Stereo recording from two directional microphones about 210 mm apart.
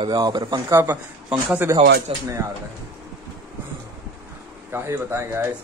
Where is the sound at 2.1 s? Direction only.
25° right (ahead or behind).